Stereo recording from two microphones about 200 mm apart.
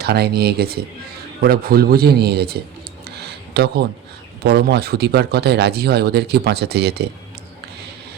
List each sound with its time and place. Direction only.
0.0 s speech: 55° right (ahead or behind)
3.2 s a sound: 55° right (ahead or behind)
4.4 s speech: 55° right (ahead or behind)